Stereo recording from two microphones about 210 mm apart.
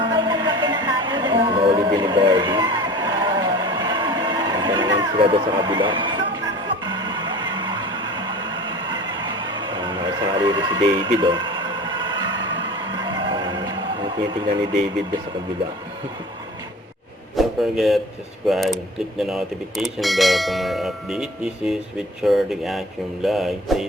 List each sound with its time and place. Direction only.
0.0 s music: 20° right (ahead or behind)
9.6 s a sound: 20° right (ahead or behind)
17.3 s speech: centre (ahead or behind)